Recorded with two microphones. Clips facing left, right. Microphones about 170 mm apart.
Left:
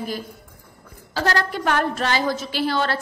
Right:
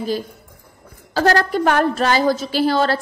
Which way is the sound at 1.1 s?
45° right (ahead or behind).